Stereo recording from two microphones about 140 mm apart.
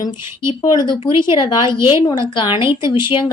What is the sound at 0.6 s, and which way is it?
A woman's voice, 30° left (ahead or behind).